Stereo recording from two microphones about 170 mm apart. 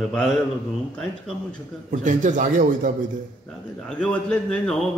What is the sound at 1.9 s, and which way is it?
Speech, 50° right (ahead or behind).